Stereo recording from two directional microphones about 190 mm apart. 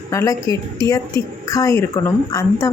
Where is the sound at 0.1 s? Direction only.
15° left (ahead or behind).